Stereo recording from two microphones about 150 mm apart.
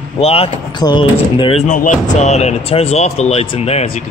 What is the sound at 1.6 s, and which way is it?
A man's voice, 60° left (ahead or behind).